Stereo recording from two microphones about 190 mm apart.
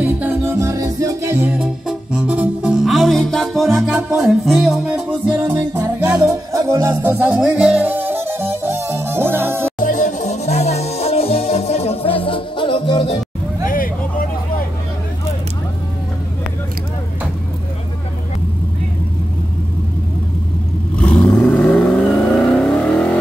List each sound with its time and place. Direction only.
0.0 s music: 10° right (ahead or behind)
9.8 s music: 40° left (ahead or behind); by 13.2 s 25° left (ahead or behind)
13.7 s vehicle: 45° left (ahead or behind)
20.9 s vehicle: 5° left (ahead or behind)